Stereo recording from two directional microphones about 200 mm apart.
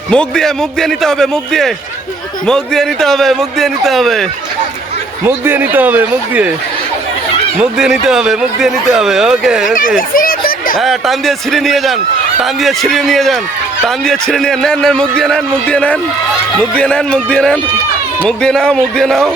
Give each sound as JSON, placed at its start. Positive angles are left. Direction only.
{"t": 0.1, "sound": "a man's voice", "side_deg": 5}
{"t": 5.2, "sound": "speech", "side_deg": -10}
{"t": 7.6, "sound": "a man's voice", "side_deg": -5}
{"t": 10.2, "sound": "a sound", "side_deg": 45}
{"t": 10.8, "sound": "a man's voice", "side_deg": 0}